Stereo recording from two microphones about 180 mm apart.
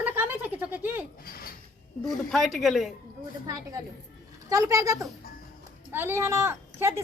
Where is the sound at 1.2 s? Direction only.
55° left (ahead or behind).